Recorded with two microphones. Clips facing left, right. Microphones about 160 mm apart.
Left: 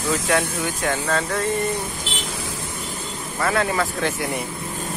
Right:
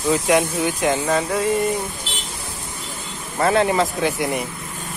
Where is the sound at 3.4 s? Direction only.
25° right (ahead or behind).